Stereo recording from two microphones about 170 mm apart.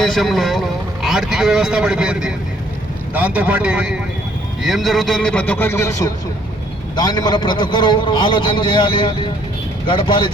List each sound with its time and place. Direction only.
0.0 s a man's voice: centre (ahead or behind)
6.9 s a man's voice: 25° left (ahead or behind)